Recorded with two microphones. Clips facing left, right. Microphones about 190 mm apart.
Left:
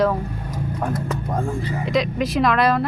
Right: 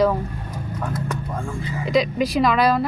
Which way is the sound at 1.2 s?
35° left (ahead or behind).